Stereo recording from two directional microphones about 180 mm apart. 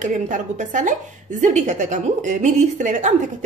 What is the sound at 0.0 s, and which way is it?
A woman's voice, 45° right (ahead or behind).